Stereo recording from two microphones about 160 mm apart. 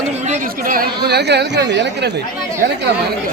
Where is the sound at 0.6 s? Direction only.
75° right (ahead or behind).